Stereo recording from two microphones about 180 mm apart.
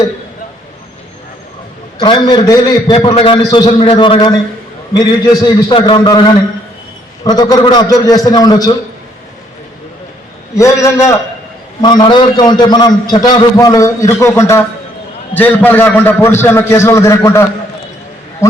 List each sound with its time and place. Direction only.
2.0 s a man's voice: 20° left (ahead or behind)
7.3 s a man's voice: 20° left (ahead or behind)
10.5 s a man's voice: 15° left (ahead or behind)